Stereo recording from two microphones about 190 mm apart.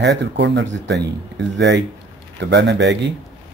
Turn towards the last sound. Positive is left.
turn(degrees=-65)  # may be behind; listen again after turning